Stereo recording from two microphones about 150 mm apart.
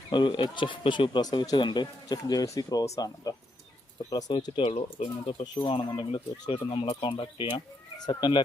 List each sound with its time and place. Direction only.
0.1 s speech: 35° left (ahead or behind)